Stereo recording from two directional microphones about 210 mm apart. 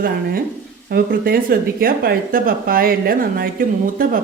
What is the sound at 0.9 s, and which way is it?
A woman's voice, 45° right (ahead or behind).